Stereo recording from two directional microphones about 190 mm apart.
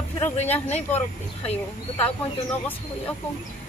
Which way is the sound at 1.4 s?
30° left (ahead or behind).